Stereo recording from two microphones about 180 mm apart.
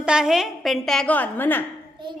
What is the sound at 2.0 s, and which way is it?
Speech, 25° right (ahead or behind).